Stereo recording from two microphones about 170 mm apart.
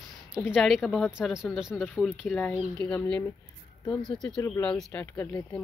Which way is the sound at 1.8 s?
10° left (ahead or behind).